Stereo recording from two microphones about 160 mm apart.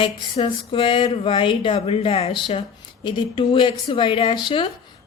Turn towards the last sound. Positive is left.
turn(degrees=30)  # may be behind; listen again after turning